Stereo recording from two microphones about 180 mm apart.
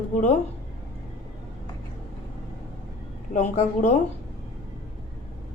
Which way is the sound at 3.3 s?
40° left (ahead or behind).